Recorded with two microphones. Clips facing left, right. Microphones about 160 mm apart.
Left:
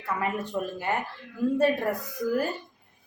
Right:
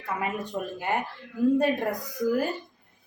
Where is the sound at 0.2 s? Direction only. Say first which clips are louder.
Left 2 dB; 15° right (ahead or behind).